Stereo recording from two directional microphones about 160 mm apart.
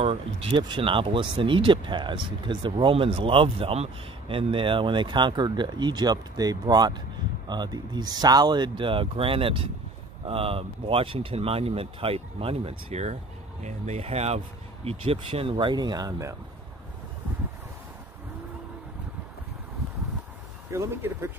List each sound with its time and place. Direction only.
0.0 s speech: 35° right (ahead or behind); by 16.3 s 20° right (ahead or behind)
20.7 s speech: 15° right (ahead or behind)